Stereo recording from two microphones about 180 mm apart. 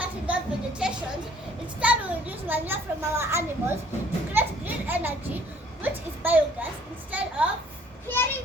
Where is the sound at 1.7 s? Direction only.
10° right (ahead or behind).